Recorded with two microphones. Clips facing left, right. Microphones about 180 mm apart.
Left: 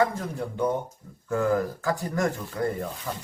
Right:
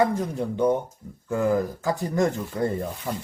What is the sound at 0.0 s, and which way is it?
Speech, 20° right (ahead or behind).